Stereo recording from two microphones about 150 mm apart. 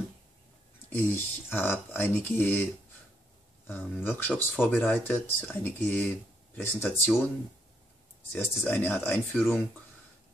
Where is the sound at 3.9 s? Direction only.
15° left (ahead or behind).